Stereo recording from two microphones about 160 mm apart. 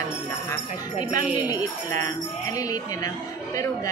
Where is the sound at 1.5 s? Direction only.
20° left (ahead or behind).